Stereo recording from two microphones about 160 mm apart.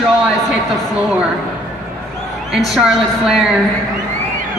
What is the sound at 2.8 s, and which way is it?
Speech, 5° right (ahead or behind).